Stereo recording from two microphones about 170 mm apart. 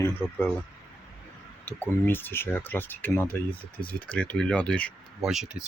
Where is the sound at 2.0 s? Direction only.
15° left (ahead or behind).